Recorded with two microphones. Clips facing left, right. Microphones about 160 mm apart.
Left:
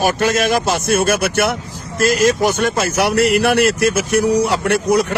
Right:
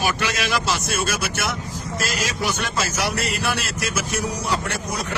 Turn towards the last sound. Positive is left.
turn(degrees=65)  # may be behind; listen again after turning